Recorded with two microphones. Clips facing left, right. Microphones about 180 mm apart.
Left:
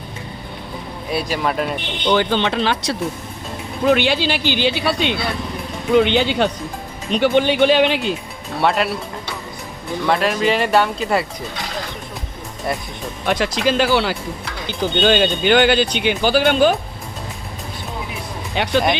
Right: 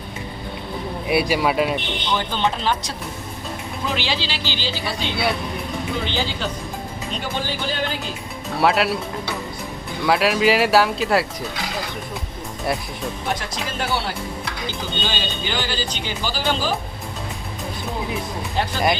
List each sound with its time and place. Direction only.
1.1 s speech: 10° right (ahead or behind)
2.1 s speech: 75° left (ahead or behind)
3.8 s speech: 60° left (ahead or behind); by 8.1 s 75° left (ahead or behind)
8.6 s speech: centre (ahead or behind)
13.2 s speech: 85° left
15.0 s speech: 60° left (ahead or behind)
18.5 s speech: 75° left (ahead or behind)